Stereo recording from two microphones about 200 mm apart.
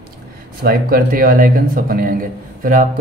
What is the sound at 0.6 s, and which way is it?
A man's voice, 50° right (ahead or behind).